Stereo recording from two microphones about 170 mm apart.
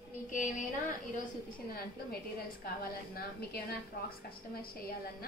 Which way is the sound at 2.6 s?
65° left (ahead or behind).